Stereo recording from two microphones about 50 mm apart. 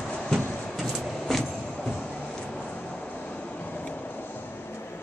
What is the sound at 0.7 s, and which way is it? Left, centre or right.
Vehicle, centre.